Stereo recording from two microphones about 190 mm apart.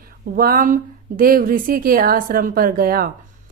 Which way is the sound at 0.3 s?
50° right (ahead or behind).